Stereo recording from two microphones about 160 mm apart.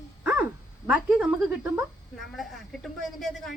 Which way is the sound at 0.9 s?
5° right (ahead or behind).